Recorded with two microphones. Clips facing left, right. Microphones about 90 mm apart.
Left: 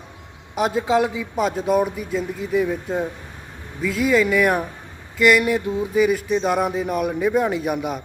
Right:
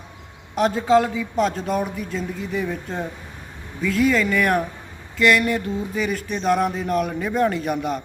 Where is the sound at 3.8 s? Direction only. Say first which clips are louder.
Left 1 dB; 5° left (ahead or behind).